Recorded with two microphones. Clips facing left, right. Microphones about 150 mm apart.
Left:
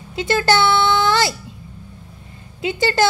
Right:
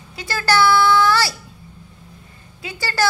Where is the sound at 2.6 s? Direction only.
20° left (ahead or behind).